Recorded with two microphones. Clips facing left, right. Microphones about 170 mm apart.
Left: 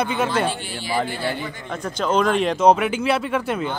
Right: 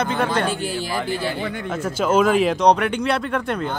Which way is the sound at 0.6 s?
40° right (ahead or behind).